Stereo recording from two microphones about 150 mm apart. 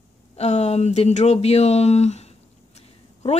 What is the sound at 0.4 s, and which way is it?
Speech, 45° left (ahead or behind).